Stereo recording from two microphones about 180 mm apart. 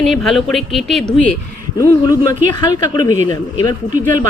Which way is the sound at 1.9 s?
20° left (ahead or behind).